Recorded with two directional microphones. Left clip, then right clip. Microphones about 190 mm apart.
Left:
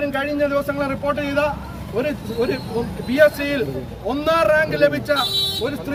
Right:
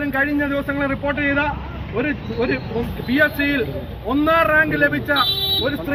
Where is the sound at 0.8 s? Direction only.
50° left (ahead or behind); by 5.2 s 35° left (ahead or behind).